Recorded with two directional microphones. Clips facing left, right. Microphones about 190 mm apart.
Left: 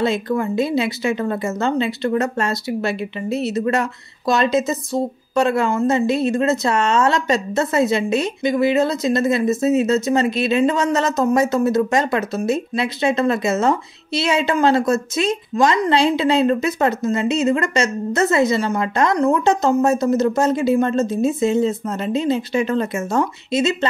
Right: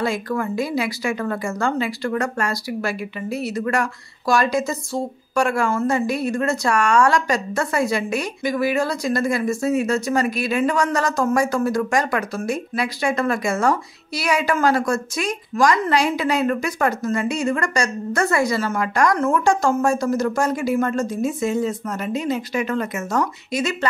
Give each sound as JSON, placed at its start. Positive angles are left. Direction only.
{"t": 0.0, "sound": "a woman's voice", "side_deg": 25}